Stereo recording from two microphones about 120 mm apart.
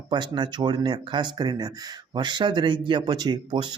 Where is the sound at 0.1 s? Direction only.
40° right (ahead or behind).